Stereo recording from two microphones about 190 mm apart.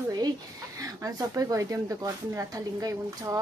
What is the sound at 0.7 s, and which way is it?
Speech, 20° right (ahead or behind).